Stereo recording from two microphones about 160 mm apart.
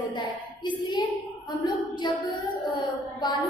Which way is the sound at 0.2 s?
30° left (ahead or behind).